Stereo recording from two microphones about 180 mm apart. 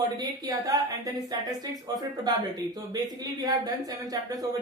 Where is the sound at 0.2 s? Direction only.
20° right (ahead or behind).